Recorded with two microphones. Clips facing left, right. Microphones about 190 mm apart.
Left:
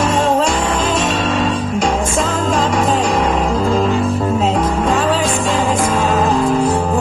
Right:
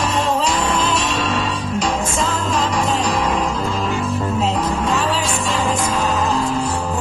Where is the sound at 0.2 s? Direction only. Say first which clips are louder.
Left 4 dB; 50° left (ahead or behind).